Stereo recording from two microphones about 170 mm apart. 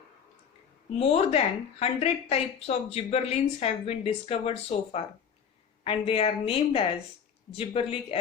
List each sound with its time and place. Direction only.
0.9 s speech: 35° left (ahead or behind)